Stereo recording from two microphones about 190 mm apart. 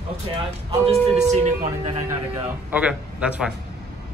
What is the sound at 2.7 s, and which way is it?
Speech, 5° right (ahead or behind).